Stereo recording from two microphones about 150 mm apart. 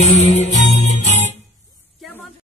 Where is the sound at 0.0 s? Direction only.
50° left (ahead or behind).